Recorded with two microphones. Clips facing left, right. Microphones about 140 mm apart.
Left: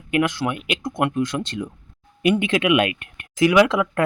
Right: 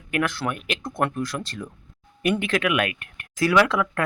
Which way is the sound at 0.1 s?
15° left (ahead or behind).